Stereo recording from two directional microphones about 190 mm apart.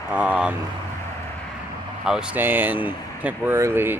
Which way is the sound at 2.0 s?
5° right (ahead or behind).